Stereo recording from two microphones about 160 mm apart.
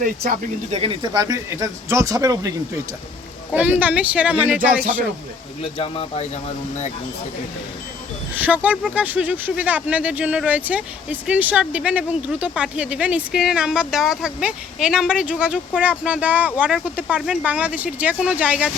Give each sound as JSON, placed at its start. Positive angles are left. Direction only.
{"t": 0.0, "sound": "speech", "side_deg": -60}
{"t": 0.7, "sound": "speech", "side_deg": -35}
{"t": 3.5, "sound": "speech", "side_deg": -10}
{"t": 5.7, "sound": "speech", "side_deg": 35}
{"t": 8.4, "sound": "speech", "side_deg": -10}